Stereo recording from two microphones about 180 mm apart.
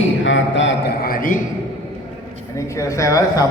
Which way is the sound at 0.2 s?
90° left.